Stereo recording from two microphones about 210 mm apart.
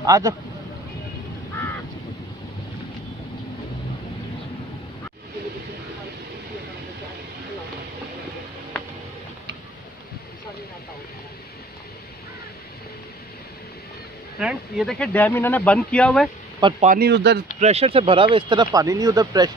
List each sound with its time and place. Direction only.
0.0 s speech: 15° right (ahead or behind)
14.4 s speech: centre (ahead or behind)
16.8 s speech: 45° right (ahead or behind)
17.6 s speech: 30° right (ahead or behind)